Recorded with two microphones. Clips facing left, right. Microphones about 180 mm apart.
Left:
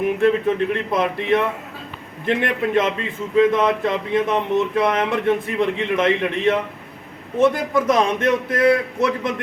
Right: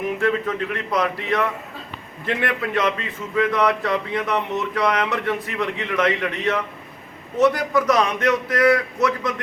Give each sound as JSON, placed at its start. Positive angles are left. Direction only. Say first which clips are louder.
{"t": 0.2, "sound": "speech", "louder": "left 6 dB", "side_deg": 25}